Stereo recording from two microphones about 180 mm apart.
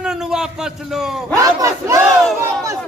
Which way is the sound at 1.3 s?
15° right (ahead or behind).